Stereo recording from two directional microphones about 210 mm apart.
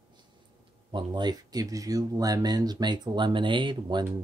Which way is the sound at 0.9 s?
20° right (ahead or behind).